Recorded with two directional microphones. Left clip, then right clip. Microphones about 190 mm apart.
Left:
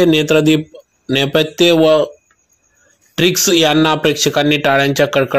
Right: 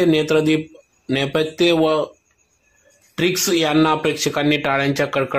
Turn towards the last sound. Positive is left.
turn(degrees=15)  # may be behind; listen again after turning